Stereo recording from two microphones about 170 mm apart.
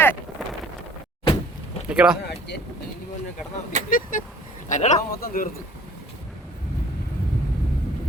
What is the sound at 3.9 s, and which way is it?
A man's voice, 55° left (ahead or behind).